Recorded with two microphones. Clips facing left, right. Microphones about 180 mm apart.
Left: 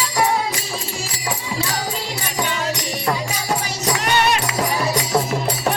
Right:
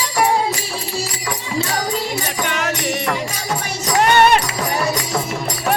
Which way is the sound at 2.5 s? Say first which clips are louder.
Right 2 dB; 80° right.